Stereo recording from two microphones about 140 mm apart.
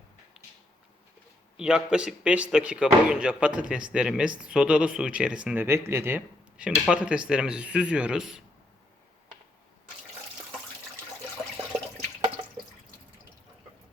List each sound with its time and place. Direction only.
0.4 s a sound: 5° right (ahead or behind)
1.5 s speech: 5° right (ahead or behind)
5.6 s speech: 20° right (ahead or behind)